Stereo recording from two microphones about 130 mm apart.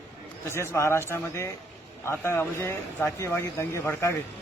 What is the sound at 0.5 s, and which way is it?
A man's voice, 20° left (ahead or behind).